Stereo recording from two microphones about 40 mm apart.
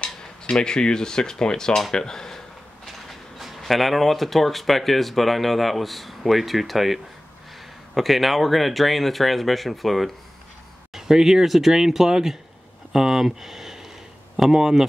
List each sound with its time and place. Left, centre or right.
0.0 s cutlery: left
1.9 s speech: centre
3.1 s a sound: centre
3.7 s speech: centre
10.9 s speech: centre